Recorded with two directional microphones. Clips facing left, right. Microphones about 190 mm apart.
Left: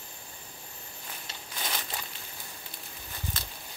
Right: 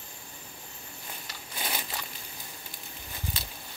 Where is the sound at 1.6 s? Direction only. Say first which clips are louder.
Right 1 dB; 10° right (ahead or behind).